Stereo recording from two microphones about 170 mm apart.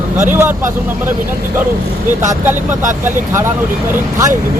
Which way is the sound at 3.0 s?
15° right (ahead or behind).